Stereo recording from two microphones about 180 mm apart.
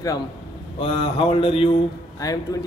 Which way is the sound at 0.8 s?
30° left (ahead or behind).